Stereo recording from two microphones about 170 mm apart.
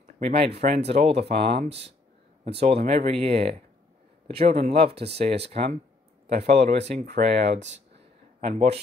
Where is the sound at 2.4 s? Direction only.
35° right (ahead or behind).